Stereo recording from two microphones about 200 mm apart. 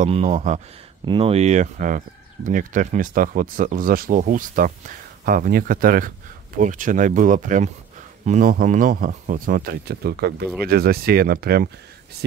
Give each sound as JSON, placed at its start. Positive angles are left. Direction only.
{"t": 0.0, "sound": "speech", "side_deg": -35}
{"t": 1.0, "sound": "speech", "side_deg": -25}